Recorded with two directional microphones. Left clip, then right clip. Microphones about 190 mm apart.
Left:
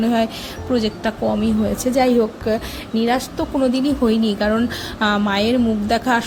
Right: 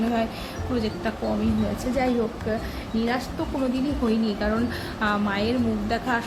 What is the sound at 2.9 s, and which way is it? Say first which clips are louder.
A woman's voice: left 7 dB; 45° left (ahead or behind).